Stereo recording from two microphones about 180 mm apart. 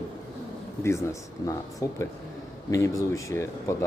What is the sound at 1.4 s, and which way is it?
Speech, 20° left (ahead or behind).